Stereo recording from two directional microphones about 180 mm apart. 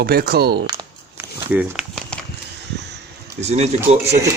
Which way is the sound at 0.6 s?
25° right (ahead or behind).